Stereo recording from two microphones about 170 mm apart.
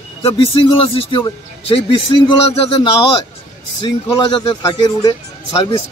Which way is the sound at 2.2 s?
30° left (ahead or behind).